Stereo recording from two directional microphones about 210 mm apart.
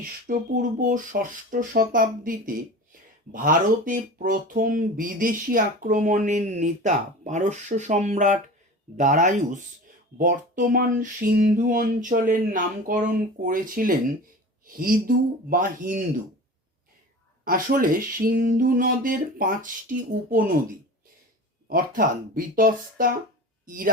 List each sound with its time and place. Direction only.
0.3 s speech: 40° right (ahead or behind)
17.4 s speech: 40° right (ahead or behind)
21.7 s speech: 40° right (ahead or behind)